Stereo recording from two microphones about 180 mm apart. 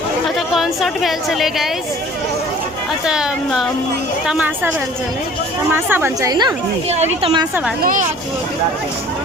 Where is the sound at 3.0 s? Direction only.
5° right (ahead or behind).